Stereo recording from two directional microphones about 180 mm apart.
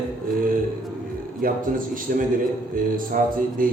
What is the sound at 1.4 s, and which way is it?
A man's voice, 50° right (ahead or behind).